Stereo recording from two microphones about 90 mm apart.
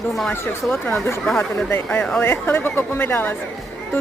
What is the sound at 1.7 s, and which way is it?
A woman's voice, 20° left (ahead or behind).